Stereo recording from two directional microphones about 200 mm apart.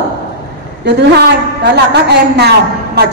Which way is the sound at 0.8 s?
55° right (ahead or behind).